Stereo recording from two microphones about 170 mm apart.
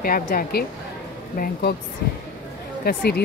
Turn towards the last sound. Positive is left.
turn(degrees=60)  # may be behind; listen again after turning